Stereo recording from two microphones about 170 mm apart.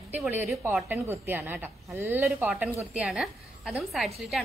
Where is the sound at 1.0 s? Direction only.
15° right (ahead or behind).